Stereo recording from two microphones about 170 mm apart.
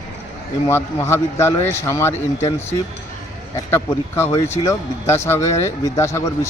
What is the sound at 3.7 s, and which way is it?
Speech, 15° left (ahead or behind).